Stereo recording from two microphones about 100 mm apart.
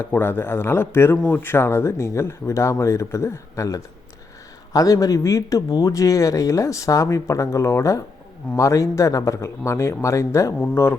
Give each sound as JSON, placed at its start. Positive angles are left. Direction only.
{"t": 0.1, "sound": "speech", "side_deg": 20}